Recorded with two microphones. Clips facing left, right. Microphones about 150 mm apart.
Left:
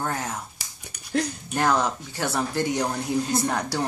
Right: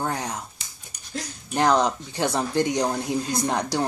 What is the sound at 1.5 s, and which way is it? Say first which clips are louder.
Speech: right 3 dB; 20° right (ahead or behind).